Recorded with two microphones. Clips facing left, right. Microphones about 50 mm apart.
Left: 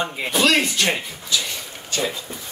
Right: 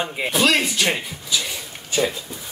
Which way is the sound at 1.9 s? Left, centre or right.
Centre.